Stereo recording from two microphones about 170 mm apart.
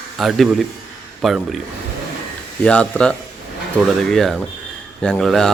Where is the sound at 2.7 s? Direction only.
5° left (ahead or behind).